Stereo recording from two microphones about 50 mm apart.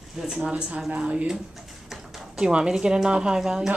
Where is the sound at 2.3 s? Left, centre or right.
Centre.